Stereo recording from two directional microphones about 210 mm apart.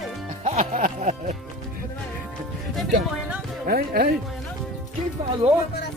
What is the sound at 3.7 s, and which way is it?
Speech, 45° right (ahead or behind).